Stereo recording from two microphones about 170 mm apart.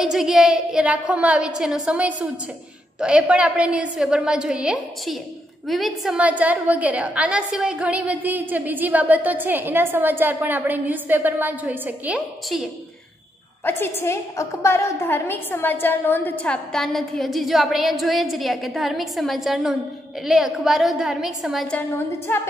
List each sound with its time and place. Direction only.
0.0 s a woman's voice: centre (ahead or behind)
13.7 s a woman's voice: 15° left (ahead or behind)